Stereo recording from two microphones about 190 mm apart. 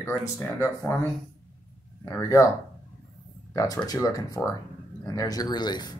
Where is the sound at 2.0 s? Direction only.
15° left (ahead or behind).